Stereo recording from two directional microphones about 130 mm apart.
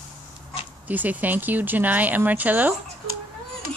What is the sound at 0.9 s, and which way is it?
Speech, 10° right (ahead or behind).